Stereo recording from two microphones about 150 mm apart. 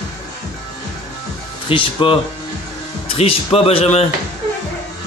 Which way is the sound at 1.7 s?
35° left (ahead or behind).